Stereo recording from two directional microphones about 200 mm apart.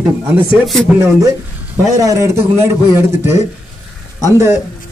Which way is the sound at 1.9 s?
15° right (ahead or behind).